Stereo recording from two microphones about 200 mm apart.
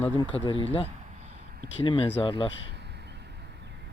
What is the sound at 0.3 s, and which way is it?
Speech, 30° left (ahead or behind).